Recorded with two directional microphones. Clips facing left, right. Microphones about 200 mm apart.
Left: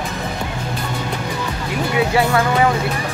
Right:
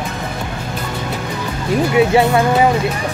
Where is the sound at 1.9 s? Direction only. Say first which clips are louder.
Right 4 dB; 20° right (ahead or behind).